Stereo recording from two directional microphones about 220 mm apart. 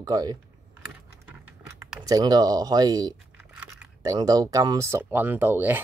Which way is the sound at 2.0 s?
15° right (ahead or behind).